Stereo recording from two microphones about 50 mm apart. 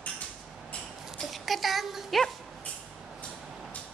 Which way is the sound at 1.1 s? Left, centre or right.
Centre.